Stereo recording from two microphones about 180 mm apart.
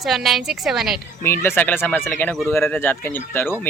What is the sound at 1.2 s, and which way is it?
Speech, 10° left (ahead or behind).